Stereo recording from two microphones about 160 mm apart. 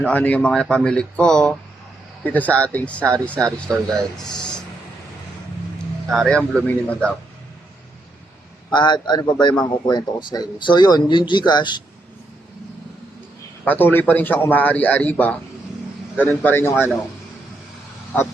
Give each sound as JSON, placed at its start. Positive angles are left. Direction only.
{"t": 0.0, "sound": "speech", "side_deg": 10}
{"t": 6.1, "sound": "speech", "side_deg": 5}
{"t": 8.7, "sound": "a man's voice", "side_deg": 30}
{"t": 13.7, "sound": "speech", "side_deg": 10}